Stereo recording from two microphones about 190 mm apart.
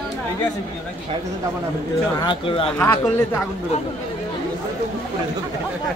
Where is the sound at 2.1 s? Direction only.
25° left (ahead or behind).